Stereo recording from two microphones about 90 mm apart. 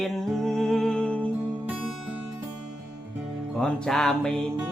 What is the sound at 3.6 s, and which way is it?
Music, 5° left (ahead or behind).